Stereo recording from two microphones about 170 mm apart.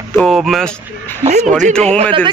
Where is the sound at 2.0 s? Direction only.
30° right (ahead or behind).